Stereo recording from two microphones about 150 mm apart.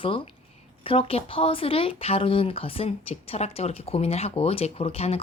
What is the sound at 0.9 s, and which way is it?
Speech, 40° left (ahead or behind).